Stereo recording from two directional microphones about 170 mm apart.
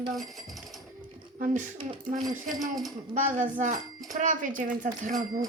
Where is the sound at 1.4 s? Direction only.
50° right (ahead or behind).